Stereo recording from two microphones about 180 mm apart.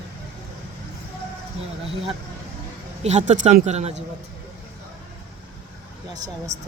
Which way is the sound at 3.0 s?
40° right (ahead or behind).